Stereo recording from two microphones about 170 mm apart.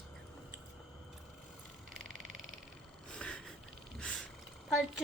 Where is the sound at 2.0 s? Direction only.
50° right (ahead or behind).